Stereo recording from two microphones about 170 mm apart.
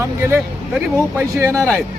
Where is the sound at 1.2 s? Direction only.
15° right (ahead or behind).